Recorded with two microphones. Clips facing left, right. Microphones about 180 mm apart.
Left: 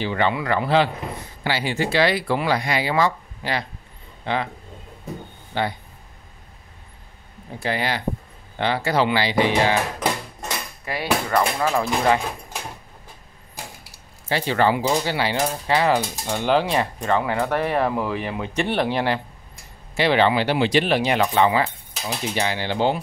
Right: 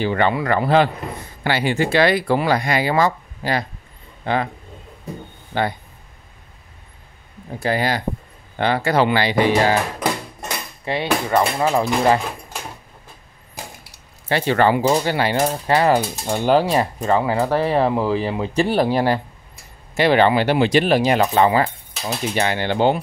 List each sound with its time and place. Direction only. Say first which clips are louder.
0.0 s speech: right 3 dB; 50° right (ahead or behind)
5.5 s speech: right 3 dB; 50° right (ahead or behind)
7.6 s speech: right 4 dB; 40° right (ahead or behind)
10.9 s speech: right 3 dB; 25° right (ahead or behind)
14.3 s speech: right 3 dB; 55° right (ahead or behind); by 16.8 s 40° right (ahead or behind)
17.0 s speech: right 3 dB; 30° right (ahead or behind)
22.3 s speech: right 4 dB; 55° right (ahead or behind)